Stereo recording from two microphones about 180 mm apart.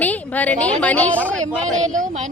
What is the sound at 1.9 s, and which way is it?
Speech, 45° right (ahead or behind).